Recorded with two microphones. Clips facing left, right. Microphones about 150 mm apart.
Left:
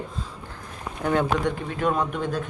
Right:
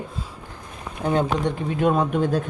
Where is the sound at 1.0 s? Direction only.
20° right (ahead or behind).